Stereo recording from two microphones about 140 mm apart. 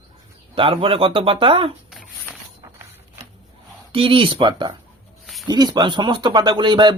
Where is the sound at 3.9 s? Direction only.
40° right (ahead or behind).